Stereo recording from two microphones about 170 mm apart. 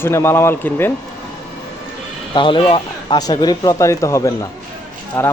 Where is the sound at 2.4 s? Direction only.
30° left (ahead or behind); by 5.3 s 10° left (ahead or behind).